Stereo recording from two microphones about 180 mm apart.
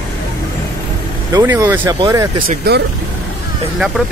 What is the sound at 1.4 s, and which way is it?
Speech, 10° right (ahead or behind).